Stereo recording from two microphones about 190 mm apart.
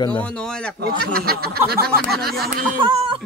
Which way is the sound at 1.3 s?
55° right (ahead or behind).